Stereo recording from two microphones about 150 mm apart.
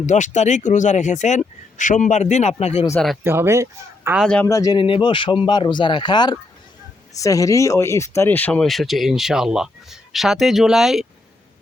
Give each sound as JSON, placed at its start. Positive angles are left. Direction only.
{"t": 0.0, "sound": "speech", "side_deg": 55}
{"t": 3.2, "sound": "speech", "side_deg": -15}
{"t": 4.2, "sound": "a man's voice", "side_deg": 5}
{"t": 4.4, "sound": "speech", "side_deg": 20}